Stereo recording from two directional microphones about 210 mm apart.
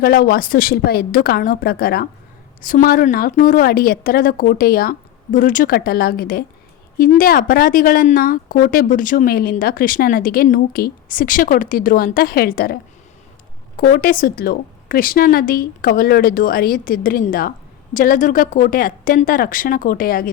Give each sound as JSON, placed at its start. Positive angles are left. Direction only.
{"t": 0.0, "sound": "a woman's voice", "side_deg": 45}